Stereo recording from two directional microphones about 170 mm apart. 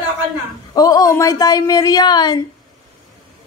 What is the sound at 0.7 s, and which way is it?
Speech, 20° left (ahead or behind).